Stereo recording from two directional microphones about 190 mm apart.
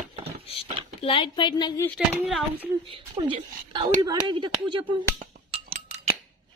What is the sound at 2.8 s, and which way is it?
Speech, 25° right (ahead or behind).